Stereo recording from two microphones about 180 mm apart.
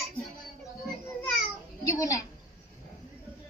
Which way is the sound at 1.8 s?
20° left (ahead or behind).